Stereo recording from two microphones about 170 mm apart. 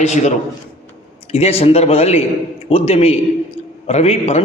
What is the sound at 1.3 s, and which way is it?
A man's voice, 35° left (ahead or behind).